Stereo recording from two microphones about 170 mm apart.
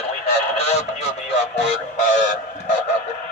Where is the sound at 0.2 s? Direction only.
40° left (ahead or behind).